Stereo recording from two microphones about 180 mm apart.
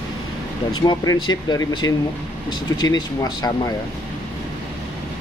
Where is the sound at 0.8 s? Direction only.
25° left (ahead or behind).